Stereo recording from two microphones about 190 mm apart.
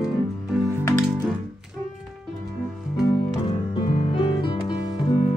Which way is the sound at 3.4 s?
25° left (ahead or behind).